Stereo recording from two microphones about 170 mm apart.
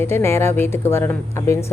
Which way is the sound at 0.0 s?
15° left (ahead or behind).